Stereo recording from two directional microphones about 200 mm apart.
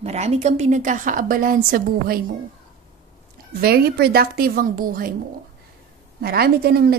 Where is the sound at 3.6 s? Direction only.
50° right (ahead or behind).